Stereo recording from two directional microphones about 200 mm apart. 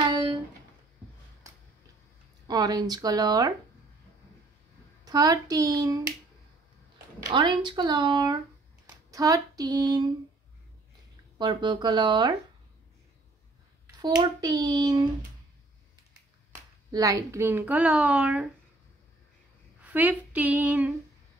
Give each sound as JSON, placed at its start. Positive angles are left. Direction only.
{"t": 0.0, "sound": "a sound", "side_deg": -25}
{"t": 2.4, "sound": "speech", "side_deg": -20}
{"t": 5.0, "sound": "a woman's voice", "side_deg": -20}
{"t": 7.2, "sound": "speech", "side_deg": -20}
{"t": 8.8, "sound": "a sound", "side_deg": -15}
{"t": 11.3, "sound": "speech", "side_deg": -20}
{"t": 14.0, "sound": "speech", "side_deg": -20}
{"t": 16.9, "sound": "a woman's voice", "side_deg": -15}
{"t": 19.8, "sound": "speech", "side_deg": -10}